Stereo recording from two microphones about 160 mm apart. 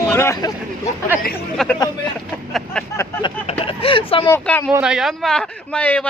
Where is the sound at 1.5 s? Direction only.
5° left (ahead or behind).